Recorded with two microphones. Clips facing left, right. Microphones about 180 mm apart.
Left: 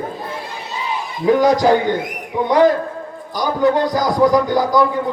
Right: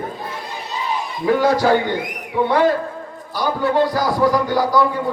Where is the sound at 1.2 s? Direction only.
15° left (ahead or behind).